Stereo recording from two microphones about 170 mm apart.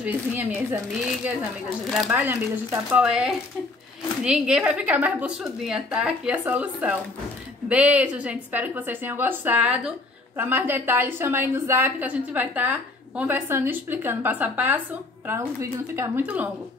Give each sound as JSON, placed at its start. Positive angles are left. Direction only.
{"t": 0.0, "sound": "a woman's voice", "side_deg": -10}